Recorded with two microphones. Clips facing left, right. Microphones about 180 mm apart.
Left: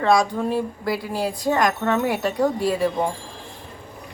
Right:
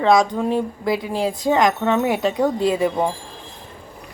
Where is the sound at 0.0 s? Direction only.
20° right (ahead or behind).